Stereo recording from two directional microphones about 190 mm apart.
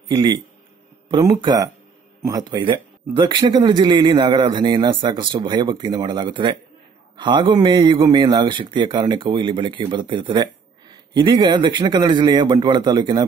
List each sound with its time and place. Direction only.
0.1 s speech: 25° right (ahead or behind)